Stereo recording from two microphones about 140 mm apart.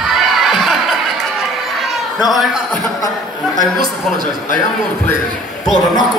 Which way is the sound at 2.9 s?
25° left (ahead or behind).